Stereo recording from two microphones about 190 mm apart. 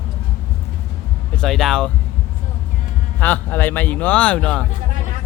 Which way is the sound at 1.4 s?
Centre (ahead or behind).